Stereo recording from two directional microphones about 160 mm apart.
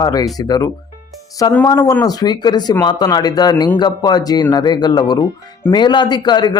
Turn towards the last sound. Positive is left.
turn(degrees=25)  # may be behind; listen again after turning